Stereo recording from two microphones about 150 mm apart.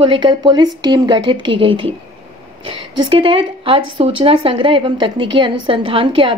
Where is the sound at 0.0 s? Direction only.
35° right (ahead or behind).